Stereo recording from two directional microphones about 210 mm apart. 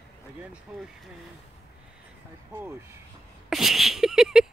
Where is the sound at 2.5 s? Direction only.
10° right (ahead or behind).